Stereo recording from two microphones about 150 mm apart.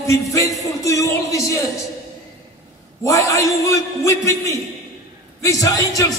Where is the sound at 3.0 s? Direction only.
20° left (ahead or behind).